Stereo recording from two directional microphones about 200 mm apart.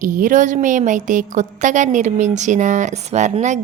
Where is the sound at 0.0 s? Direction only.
40° right (ahead or behind).